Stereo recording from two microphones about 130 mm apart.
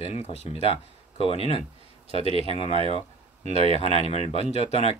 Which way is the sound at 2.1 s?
45° right (ahead or behind).